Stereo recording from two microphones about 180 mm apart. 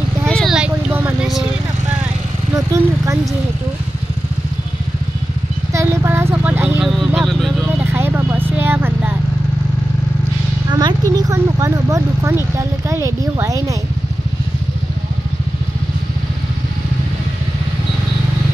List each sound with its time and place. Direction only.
0.3 s vehicle: centre (ahead or behind)
2.5 s vehicle: 15° right (ahead or behind)
5.7 s vehicle: 15° right (ahead or behind); by 7.5 s centre (ahead or behind)
7.9 s vehicle: 10° right (ahead or behind)
10.7 s a sound: 25° right (ahead or behind)